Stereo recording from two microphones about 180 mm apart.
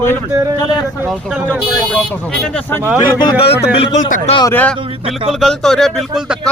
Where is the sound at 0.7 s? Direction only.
20° left (ahead or behind).